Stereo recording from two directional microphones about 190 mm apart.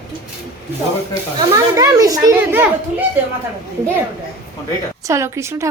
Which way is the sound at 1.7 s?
15° right (ahead or behind).